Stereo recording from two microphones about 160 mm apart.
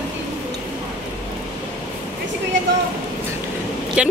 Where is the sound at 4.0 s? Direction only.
5° right (ahead or behind).